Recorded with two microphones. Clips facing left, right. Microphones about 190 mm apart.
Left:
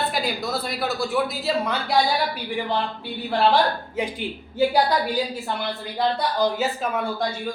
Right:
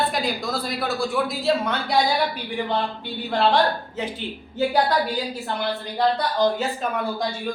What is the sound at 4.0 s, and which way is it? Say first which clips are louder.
Speech: left 2 dB; 10° left (ahead or behind).